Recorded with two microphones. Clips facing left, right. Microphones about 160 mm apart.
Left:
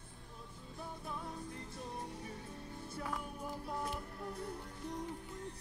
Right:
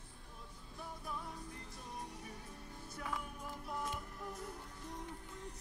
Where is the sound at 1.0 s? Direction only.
25° left (ahead or behind).